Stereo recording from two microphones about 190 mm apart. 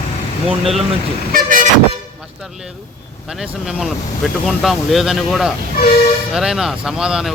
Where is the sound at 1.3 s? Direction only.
45° right (ahead or behind).